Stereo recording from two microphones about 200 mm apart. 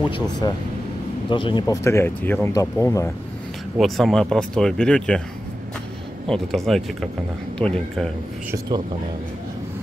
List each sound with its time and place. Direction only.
0.1 s speech: 20° left (ahead or behind)
3.7 s speech: centre (ahead or behind)
6.2 s speech: centre (ahead or behind)